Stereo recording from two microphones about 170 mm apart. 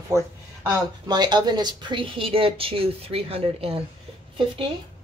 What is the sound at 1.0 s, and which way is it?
Speech, 25° right (ahead or behind).